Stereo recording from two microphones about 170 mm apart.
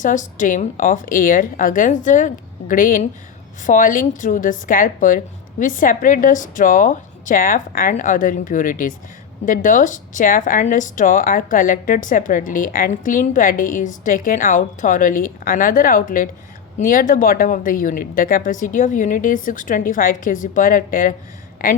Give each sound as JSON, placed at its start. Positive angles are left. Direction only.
{"t": 0.0, "sound": "speech", "side_deg": 50}